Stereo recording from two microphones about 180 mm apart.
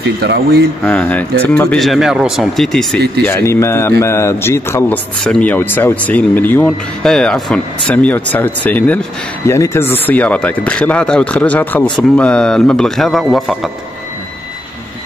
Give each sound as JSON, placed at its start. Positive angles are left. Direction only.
{"t": 0.2, "sound": "speech", "side_deg": -65}
{"t": 0.8, "sound": "speech", "side_deg": 10}
{"t": 3.3, "sound": "speech", "side_deg": 15}